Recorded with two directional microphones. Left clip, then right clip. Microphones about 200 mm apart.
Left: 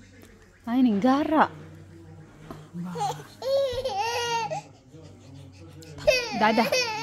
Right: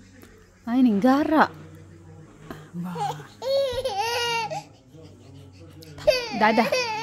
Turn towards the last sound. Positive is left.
turn(degrees=-5)  # may be behind; listen again after turning